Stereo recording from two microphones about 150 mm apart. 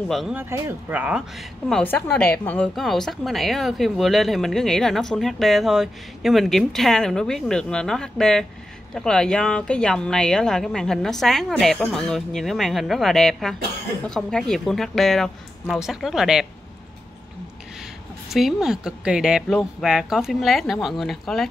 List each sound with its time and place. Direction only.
0.1 s a woman's voice: centre (ahead or behind)
0.4 s a woman's voice: 15° right (ahead or behind)
18.3 s a woman's voice: 5° right (ahead or behind)